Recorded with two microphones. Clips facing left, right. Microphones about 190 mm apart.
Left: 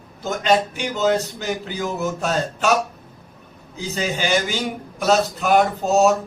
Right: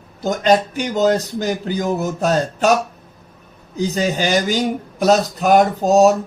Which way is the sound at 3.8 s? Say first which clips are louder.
Right 6 dB; 40° right (ahead or behind).